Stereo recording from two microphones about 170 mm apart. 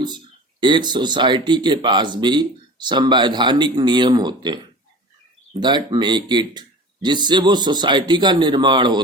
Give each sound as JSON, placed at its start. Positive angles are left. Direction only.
{"t": 0.6, "sound": "speech", "side_deg": -25}